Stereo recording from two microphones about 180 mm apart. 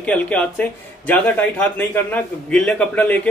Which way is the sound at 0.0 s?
5° left (ahead or behind).